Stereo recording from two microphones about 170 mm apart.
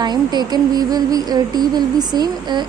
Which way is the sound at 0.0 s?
25° right (ahead or behind).